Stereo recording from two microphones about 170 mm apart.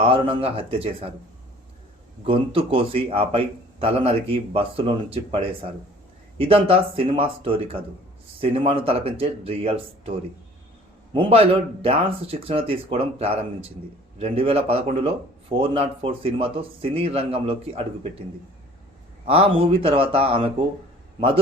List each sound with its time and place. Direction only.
0.0 s speech: 35° right (ahead or behind)
2.2 s speech: 30° right (ahead or behind)
19.3 s speech: 35° right (ahead or behind)